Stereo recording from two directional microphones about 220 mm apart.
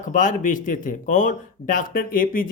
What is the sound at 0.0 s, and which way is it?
Speech, 35° left (ahead or behind).